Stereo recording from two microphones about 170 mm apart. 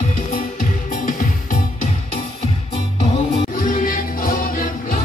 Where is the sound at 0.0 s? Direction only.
55° left (ahead or behind).